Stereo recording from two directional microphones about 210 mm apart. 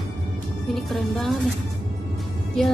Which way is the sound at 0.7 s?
Centre (ahead or behind).